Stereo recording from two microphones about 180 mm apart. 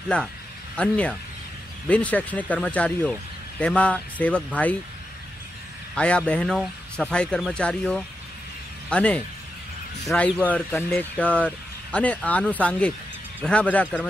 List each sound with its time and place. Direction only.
0.1 s speech: 5° left (ahead or behind)
5.9 s speech: 5° left (ahead or behind)